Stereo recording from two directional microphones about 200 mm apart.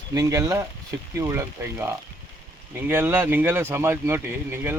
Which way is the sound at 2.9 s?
10° right (ahead or behind).